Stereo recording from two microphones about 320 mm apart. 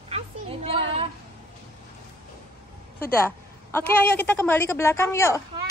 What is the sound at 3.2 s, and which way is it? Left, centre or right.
A woman's voice, centre.